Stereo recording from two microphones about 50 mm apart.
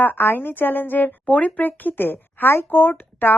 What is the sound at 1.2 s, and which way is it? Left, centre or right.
Speech, left.